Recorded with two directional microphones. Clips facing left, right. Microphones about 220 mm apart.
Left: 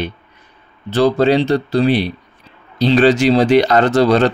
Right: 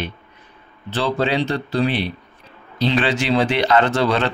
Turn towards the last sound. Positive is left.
turn(degrees=40)  # may be behind; listen again after turning